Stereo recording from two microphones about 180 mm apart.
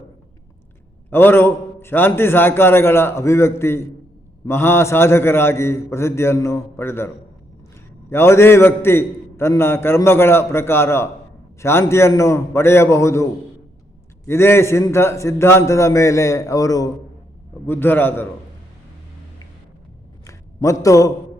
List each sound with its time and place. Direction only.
1.1 s a man's voice: 10° left (ahead or behind)
8.1 s a man's voice: 15° left (ahead or behind)
14.3 s a man's voice: 15° left (ahead or behind)
20.2 s a sound: 15° left (ahead or behind)